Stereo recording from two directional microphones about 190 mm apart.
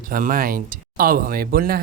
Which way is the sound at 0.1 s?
45° right (ahead or behind).